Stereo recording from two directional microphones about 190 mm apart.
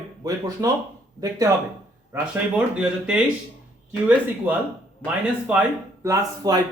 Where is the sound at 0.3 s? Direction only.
20° right (ahead or behind).